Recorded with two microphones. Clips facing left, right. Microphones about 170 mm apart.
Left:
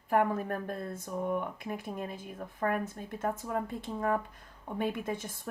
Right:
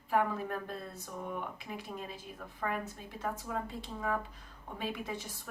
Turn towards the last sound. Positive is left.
turn(degrees=50)  # may be behind; listen again after turning